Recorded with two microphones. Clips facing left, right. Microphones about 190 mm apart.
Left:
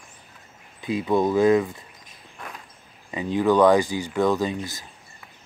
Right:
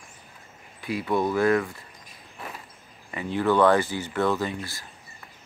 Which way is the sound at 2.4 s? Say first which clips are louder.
Right 1 dB; 5° right (ahead or behind).